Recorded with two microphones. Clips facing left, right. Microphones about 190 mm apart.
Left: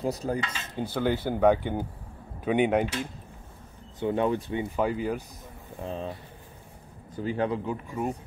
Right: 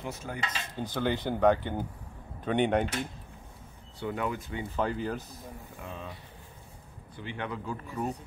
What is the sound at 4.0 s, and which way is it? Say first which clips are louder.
Speech: left 7 dB; 30° left (ahead or behind).